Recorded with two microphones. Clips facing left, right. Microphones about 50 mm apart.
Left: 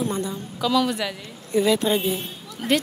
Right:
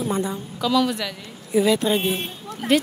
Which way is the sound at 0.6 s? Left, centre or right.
Centre.